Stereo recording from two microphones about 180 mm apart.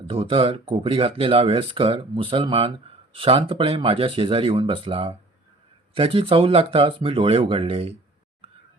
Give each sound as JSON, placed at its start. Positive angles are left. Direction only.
{"t": 0.1, "sound": "speech", "side_deg": -30}